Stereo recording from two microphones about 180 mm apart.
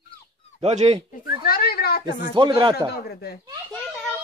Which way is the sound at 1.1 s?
55° left (ahead or behind).